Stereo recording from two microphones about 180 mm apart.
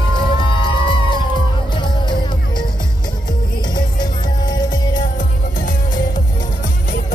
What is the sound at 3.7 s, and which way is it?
Music, 25° left (ahead or behind).